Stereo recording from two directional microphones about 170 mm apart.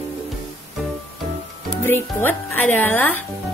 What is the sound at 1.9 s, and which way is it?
Speech, 15° left (ahead or behind).